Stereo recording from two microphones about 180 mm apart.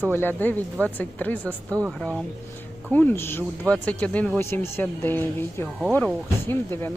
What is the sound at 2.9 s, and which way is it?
Speech, 10° left (ahead or behind).